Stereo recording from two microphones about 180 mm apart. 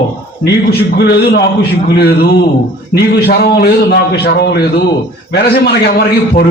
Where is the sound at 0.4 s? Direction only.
65° left (ahead or behind).